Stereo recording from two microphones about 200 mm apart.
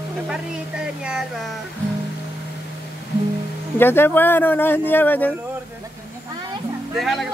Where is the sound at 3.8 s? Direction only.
10° left (ahead or behind).